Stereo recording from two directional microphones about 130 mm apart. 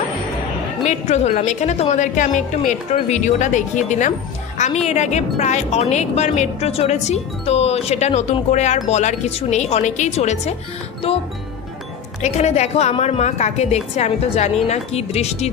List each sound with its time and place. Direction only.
0.8 s a woman's voice: 60° left (ahead or behind)
2.1 s a woman's voice: 75° left (ahead or behind)
4.6 s a woman's voice: 60° left (ahead or behind)
11.1 s music: 50° left (ahead or behind)
12.2 s a woman's voice: 60° left (ahead or behind)